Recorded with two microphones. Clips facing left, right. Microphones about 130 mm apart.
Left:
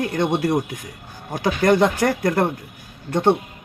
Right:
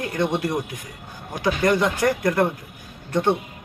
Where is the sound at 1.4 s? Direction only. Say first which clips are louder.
Left 3 dB; 40° left (ahead or behind).